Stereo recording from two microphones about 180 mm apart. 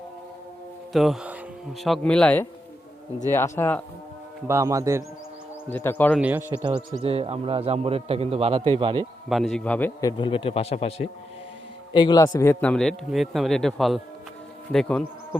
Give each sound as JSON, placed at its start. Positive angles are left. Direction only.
{"t": 0.9, "sound": "a man's voice", "side_deg": 0}
{"t": 4.4, "sound": "a man's voice", "side_deg": -15}
{"t": 5.7, "sound": "speech", "side_deg": 10}
{"t": 6.1, "sound": "a man's voice", "side_deg": -10}
{"t": 7.0, "sound": "a man's voice", "side_deg": -35}
{"t": 9.3, "sound": "a man's voice", "side_deg": 0}
{"t": 10.0, "sound": "speech", "side_deg": 25}
{"t": 11.9, "sound": "a man's voice", "side_deg": 20}